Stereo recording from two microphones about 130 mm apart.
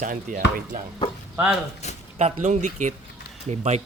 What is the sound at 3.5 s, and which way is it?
Speech, 60° right (ahead or behind).